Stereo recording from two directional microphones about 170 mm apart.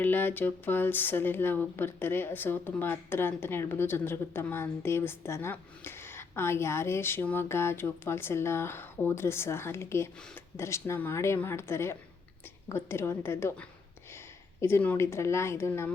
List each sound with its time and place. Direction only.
0.0 s speech: 10° left (ahead or behind)